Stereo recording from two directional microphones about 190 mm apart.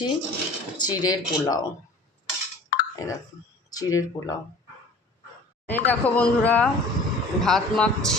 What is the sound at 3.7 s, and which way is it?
Speech, 20° left (ahead or behind).